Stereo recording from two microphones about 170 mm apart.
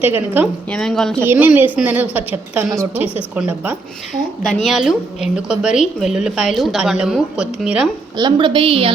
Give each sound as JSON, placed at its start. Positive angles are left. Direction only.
{"t": 0.0, "sound": "a woman's voice", "side_deg": -10}
{"t": 0.7, "sound": "a woman's voice", "side_deg": 0}
{"t": 1.2, "sound": "a woman's voice", "side_deg": -10}
{"t": 8.1, "sound": "a woman's voice", "side_deg": -25}